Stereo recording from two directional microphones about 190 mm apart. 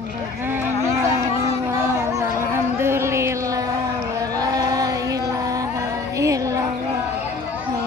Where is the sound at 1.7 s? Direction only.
15° right (ahead or behind).